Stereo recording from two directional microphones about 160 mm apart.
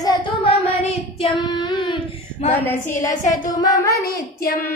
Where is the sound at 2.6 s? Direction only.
15° left (ahead or behind).